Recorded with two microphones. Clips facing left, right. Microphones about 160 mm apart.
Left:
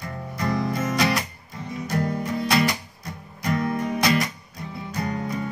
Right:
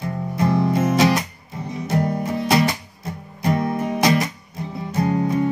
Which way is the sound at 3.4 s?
20° right (ahead or behind).